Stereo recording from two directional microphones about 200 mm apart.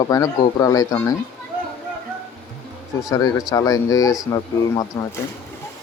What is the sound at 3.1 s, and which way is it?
Speech, 20° left (ahead or behind).